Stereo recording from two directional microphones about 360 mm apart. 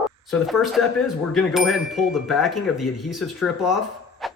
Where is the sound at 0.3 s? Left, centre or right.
Centre.